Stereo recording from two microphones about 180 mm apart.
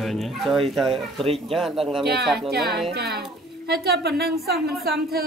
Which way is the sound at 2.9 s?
65° right (ahead or behind).